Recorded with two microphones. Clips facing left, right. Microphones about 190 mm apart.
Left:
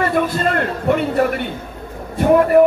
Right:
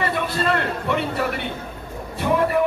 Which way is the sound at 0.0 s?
50° left (ahead or behind).